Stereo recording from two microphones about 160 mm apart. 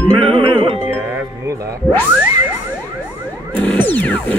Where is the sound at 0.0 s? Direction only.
10° left (ahead or behind).